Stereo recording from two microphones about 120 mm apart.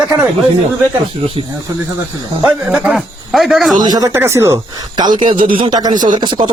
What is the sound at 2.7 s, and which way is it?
Speech, 5° right (ahead or behind).